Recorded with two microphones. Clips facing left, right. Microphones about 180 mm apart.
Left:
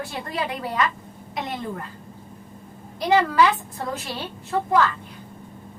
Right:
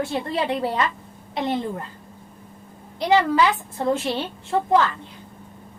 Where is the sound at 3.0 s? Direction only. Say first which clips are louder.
Even; 20° right (ahead or behind).